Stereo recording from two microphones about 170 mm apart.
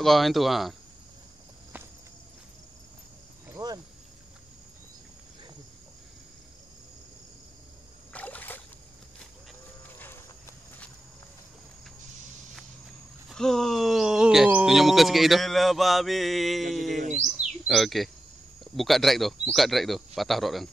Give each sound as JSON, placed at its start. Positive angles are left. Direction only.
{"t": 0.0, "sound": "speech", "side_deg": 0}
{"t": 3.4, "sound": "cricket", "side_deg": -15}
{"t": 8.1, "sound": "rowboat", "side_deg": 10}
{"t": 13.3, "sound": "speech", "side_deg": 0}